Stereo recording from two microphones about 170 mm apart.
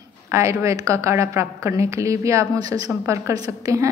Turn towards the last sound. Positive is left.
turn(degrees=-20)  # may be behind; listen again after turning